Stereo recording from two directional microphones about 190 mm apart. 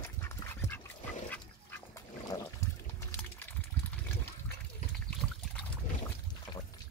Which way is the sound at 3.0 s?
10° left (ahead or behind).